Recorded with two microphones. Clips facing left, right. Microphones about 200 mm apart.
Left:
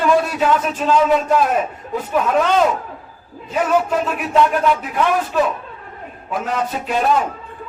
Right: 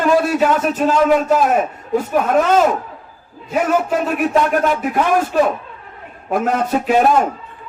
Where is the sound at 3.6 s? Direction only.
50° right (ahead or behind).